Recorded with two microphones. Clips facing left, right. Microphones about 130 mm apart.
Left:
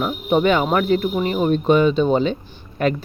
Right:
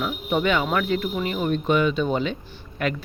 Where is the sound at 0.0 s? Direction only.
35° left (ahead or behind).